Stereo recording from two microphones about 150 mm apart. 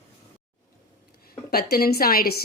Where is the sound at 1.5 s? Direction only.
90° left.